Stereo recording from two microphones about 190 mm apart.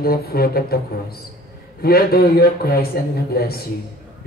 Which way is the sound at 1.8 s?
55° left (ahead or behind).